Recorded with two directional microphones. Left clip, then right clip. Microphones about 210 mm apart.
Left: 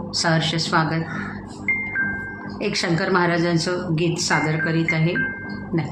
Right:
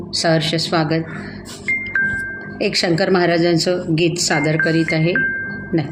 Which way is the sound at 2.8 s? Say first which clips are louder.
Right 4 dB; 45° right (ahead or behind).